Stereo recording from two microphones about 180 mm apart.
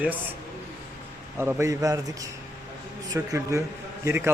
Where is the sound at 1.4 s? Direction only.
15° right (ahead or behind).